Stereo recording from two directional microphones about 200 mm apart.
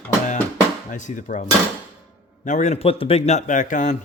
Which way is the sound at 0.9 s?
40° left (ahead or behind).